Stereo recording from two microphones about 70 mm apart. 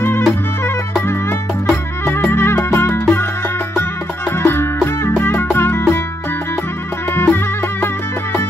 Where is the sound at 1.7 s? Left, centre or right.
Left.